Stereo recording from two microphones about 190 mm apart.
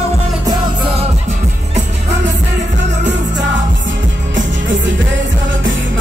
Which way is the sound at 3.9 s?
80° right.